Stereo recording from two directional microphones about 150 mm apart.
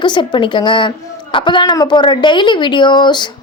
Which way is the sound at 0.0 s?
30° left (ahead or behind).